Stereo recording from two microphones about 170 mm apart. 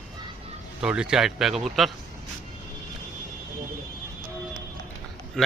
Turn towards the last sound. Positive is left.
turn(degrees=5)  # may be behind; listen again after turning